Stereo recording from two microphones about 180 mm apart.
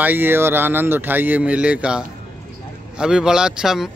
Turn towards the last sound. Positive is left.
turn(degrees=-5)  # may be behind; listen again after turning